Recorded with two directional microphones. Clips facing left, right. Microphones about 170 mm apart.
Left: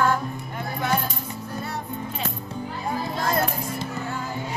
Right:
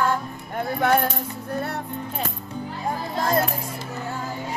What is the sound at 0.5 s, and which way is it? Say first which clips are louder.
Music: right 6 dB; 55° right (ahead or behind).